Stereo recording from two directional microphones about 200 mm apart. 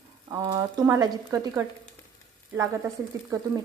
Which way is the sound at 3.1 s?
15° right (ahead or behind).